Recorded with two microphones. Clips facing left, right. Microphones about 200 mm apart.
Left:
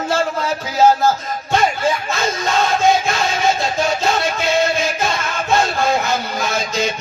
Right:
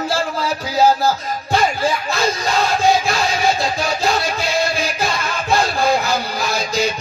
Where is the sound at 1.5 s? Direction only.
35° right (ahead or behind).